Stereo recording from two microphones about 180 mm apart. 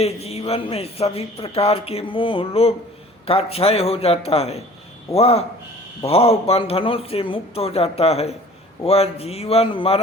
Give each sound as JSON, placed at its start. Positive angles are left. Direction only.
{"t": 0.0, "sound": "speech", "side_deg": 35}